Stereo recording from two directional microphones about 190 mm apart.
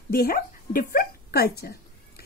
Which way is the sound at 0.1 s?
50° left (ahead or behind).